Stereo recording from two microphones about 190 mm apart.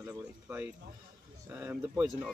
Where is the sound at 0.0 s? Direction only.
10° right (ahead or behind).